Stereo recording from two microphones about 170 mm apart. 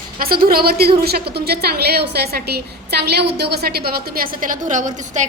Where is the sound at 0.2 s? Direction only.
60° right (ahead or behind).